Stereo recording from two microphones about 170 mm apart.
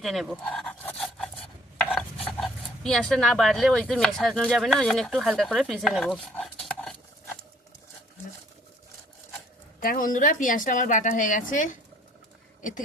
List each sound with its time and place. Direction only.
0.0 s chopping: centre (ahead or behind)
2.4 s speech: centre (ahead or behind)
9.8 s a woman's voice: 55° left (ahead or behind)